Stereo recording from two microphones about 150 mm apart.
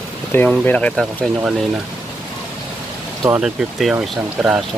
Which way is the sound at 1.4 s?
5° right (ahead or behind).